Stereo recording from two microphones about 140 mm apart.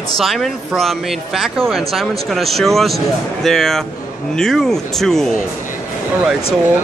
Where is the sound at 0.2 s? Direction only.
Centre (ahead or behind).